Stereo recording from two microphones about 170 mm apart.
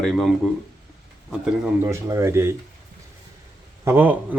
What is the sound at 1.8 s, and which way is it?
Speech, 15° right (ahead or behind).